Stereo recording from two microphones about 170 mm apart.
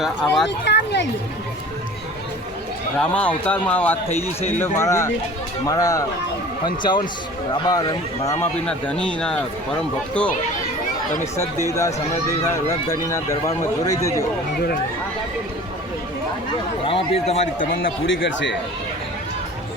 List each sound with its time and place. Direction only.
0.0 s speech: centre (ahead or behind)
0.6 s speech: 85° left
3.0 s a man's voice: 10° left (ahead or behind)
8.6 s speech: 5° left (ahead or behind)
11.7 s speech: 20° left (ahead or behind)
16.8 s a man's voice: 35° left (ahead or behind); by 17.9 s 55° left (ahead or behind)
18.0 s speech: 90° left